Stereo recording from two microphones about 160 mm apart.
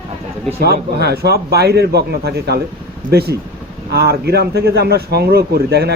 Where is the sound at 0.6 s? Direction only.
90° right.